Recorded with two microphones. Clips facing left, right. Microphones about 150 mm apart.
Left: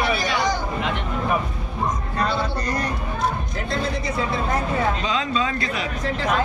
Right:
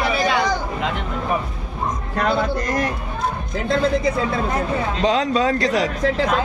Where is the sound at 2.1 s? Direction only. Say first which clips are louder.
Right 7 dB; 90° right.